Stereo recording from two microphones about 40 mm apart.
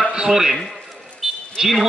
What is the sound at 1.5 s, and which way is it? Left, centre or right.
Speech, centre.